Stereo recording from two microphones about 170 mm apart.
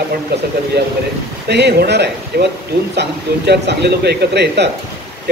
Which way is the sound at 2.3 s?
70° right (ahead or behind).